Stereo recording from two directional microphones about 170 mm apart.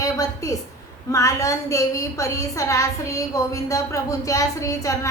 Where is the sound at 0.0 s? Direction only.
20° left (ahead or behind).